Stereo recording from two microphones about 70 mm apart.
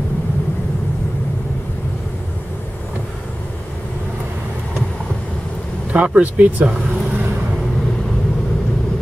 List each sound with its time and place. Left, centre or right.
5.9 s speech: centre